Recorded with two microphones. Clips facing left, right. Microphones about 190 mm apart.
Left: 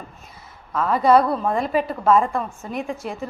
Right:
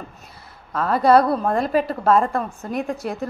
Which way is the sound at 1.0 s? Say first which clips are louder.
Right 1 dB; 35° right (ahead or behind).